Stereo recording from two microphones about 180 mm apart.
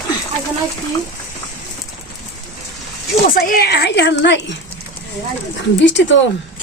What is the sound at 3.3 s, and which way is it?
Speech, 55° left (ahead or behind).